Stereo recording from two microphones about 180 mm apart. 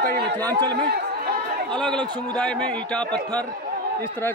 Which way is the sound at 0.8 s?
60° right (ahead or behind).